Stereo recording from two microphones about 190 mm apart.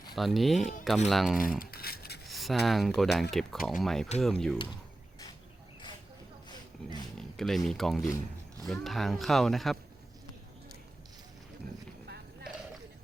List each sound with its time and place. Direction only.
0.2 s speech: centre (ahead or behind)
0.6 s speech: 40° left (ahead or behind)
1.0 s speech: centre (ahead or behind)
1.5 s a sound: 55° left (ahead or behind)
2.2 s speech: centre (ahead or behind)
4.5 s speech: 25° left (ahead or behind)
7.2 s speech: centre (ahead or behind)
12.0 s horse: 60° right (ahead or behind)